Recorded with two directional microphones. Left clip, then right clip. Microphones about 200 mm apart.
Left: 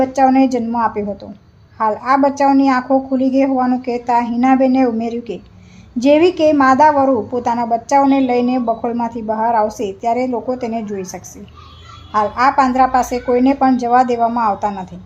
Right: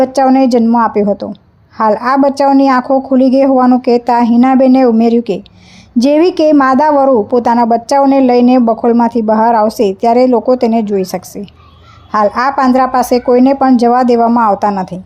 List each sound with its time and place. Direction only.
0.0 s a woman's voice: 40° right (ahead or behind)